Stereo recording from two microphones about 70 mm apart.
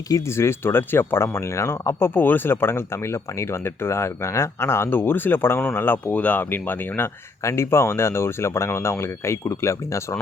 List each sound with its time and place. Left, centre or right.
0.3 s speech: left
2.0 s speech: left
7.4 s speech: left